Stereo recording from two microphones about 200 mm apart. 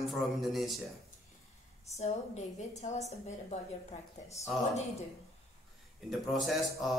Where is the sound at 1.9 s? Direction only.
35° left (ahead or behind).